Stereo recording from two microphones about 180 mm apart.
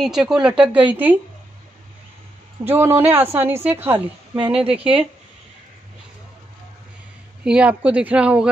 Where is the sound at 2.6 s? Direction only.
30° right (ahead or behind).